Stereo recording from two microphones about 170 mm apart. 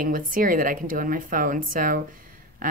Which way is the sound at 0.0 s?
55° right (ahead or behind).